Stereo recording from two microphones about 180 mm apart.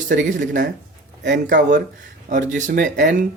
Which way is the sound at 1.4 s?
45° right (ahead or behind).